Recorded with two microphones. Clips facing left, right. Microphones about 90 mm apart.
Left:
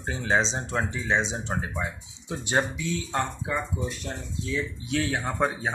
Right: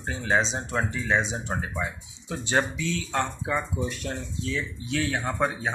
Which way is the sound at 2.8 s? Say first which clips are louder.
Right 1 dB; 75° right (ahead or behind).